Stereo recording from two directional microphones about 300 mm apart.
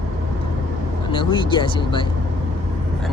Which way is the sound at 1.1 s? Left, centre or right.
Centre.